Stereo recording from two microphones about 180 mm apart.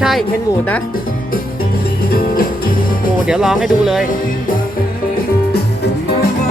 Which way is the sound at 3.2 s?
5° right (ahead or behind).